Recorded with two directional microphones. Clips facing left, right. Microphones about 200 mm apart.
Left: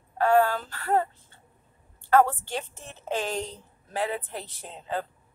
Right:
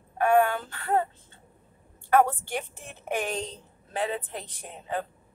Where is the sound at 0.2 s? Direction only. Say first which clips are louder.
Even; 20° right (ahead or behind).